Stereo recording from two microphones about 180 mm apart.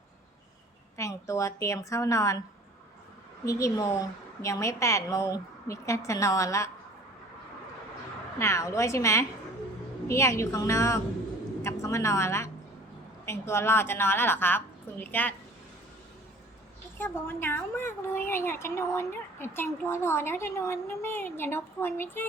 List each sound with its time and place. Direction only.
0.9 s a woman's voice: 15° left (ahead or behind)
3.4 s a woman's voice: 15° left (ahead or behind)
8.4 s a woman's voice: 15° left (ahead or behind)
17.0 s a woman's voice: 10° left (ahead or behind)